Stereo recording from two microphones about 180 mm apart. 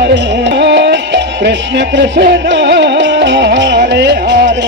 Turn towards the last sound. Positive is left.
turn(degrees=-70)  # may be behind; listen again after turning